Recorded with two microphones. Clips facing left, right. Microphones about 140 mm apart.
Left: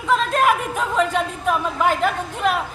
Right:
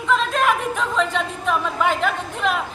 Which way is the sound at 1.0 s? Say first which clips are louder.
Left 2 dB; 45° left (ahead or behind).